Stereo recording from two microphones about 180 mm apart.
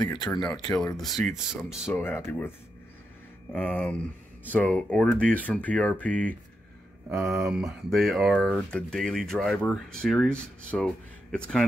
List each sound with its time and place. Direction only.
0.0 s speech: 20° left (ahead or behind)
0.9 s speech: centre (ahead or behind)
2.0 s speech: 15° left (ahead or behind)
3.5 s speech: 10° left (ahead or behind)